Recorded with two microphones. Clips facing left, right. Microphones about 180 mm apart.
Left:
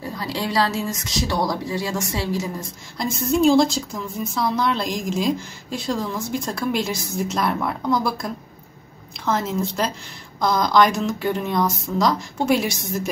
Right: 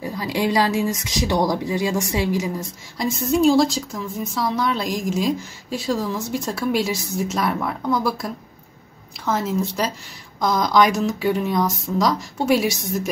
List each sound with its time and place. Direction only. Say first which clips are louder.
0.0 s a woman's voice: right 4 dB; 15° right (ahead or behind)
3.2 s a woman's voice: even; centre (ahead or behind)